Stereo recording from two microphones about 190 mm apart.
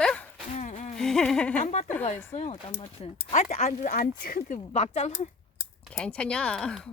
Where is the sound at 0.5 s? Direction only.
40° left (ahead or behind).